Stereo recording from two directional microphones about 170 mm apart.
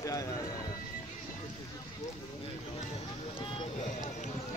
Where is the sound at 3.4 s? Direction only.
30° left (ahead or behind).